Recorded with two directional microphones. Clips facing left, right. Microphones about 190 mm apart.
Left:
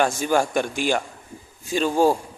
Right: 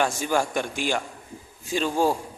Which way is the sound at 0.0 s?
50° left (ahead or behind).